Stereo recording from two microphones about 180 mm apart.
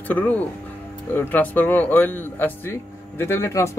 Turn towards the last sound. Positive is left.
turn(degrees=15)  # may be behind; listen again after turning